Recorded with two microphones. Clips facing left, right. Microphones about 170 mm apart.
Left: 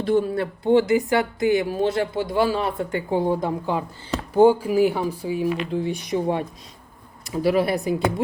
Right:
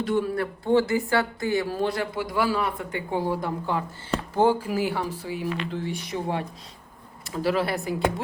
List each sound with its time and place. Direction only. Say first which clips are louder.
0.1 s speech: left 7 dB; 25° left (ahead or behind)